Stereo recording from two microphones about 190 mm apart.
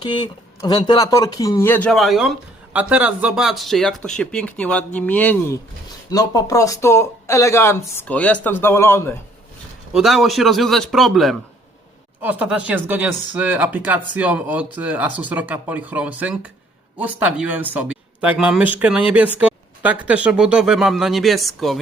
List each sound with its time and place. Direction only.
0.0 s speech: 25° left (ahead or behind); by 5.5 s 10° left (ahead or behind)
6.1 s speech: 20° left (ahead or behind)
9.9 s speech: centre (ahead or behind)